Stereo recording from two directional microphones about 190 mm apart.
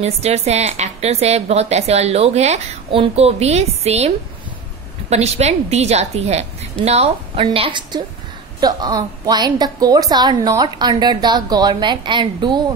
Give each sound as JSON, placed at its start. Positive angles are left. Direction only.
{"t": 0.0, "sound": "a woman's voice", "side_deg": -35}
{"t": 5.1, "sound": "a woman's voice", "side_deg": -35}